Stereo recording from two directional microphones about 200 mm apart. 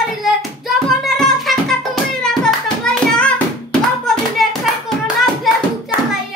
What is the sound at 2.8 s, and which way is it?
Music, 5° left (ahead or behind).